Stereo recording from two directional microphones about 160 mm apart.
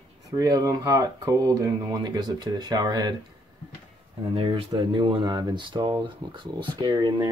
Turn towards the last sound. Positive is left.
turn(degrees=-25)  # may be behind; listen again after turning